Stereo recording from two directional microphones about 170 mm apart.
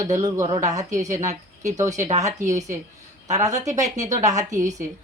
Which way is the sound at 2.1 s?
45° right (ahead or behind).